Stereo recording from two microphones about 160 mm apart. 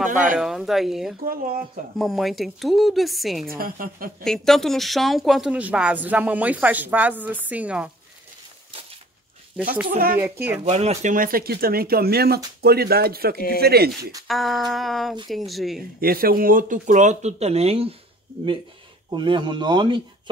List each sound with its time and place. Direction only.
0.1 s a woman's voice: 55° right (ahead or behind)
0.4 s speech: centre (ahead or behind)
1.2 s a woman's voice: 65° right (ahead or behind)
2.0 s speech: centre (ahead or behind)
3.4 s a woman's voice: 65° right (ahead or behind)
4.2 s speech: 5° left (ahead or behind)
9.8 s speech: 65° right (ahead or behind)
10.2 s speech: 15° right (ahead or behind)
10.6 s speech: 45° right (ahead or behind); by 13.9 s 80° right
14.2 s speech: centre (ahead or behind)
16.0 s speech: 65° right (ahead or behind); by 17.9 s 40° right (ahead or behind)
19.0 s speech: 30° right (ahead or behind)